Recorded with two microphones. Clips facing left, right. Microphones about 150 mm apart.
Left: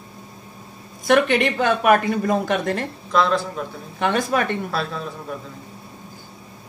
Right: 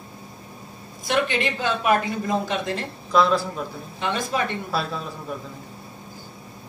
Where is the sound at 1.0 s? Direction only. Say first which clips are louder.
Left 6 dB; 55° left (ahead or behind).